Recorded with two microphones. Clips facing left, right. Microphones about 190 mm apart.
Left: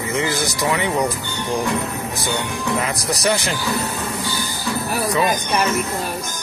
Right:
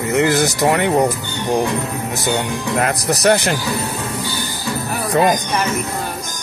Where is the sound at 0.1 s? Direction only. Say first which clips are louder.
Right 7 dB; 70° right (ahead or behind).